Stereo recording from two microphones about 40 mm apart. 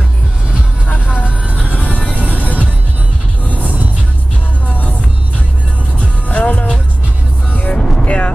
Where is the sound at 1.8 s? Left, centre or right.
Right.